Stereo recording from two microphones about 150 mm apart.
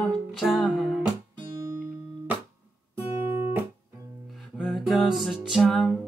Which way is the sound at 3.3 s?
15° right (ahead or behind).